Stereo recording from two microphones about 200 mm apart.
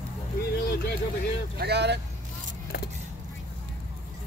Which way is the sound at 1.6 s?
55° right (ahead or behind).